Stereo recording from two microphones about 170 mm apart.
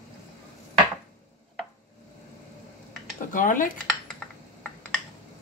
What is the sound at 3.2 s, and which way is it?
Speech, 50° left (ahead or behind).